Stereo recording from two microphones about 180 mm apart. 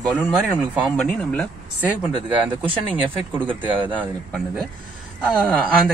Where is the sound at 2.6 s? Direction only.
10° right (ahead or behind).